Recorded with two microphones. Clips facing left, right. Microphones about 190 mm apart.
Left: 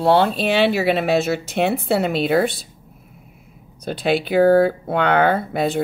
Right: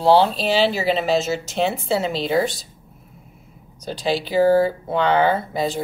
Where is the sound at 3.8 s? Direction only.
60° left (ahead or behind).